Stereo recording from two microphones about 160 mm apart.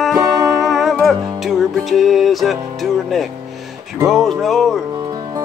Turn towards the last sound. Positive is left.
turn(degrees=0)  # may be behind; listen again after turning